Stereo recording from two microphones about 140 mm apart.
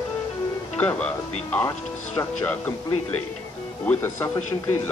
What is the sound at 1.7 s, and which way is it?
Speech, 25° left (ahead or behind).